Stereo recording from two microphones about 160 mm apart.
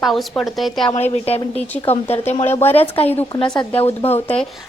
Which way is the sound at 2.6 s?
10° left (ahead or behind).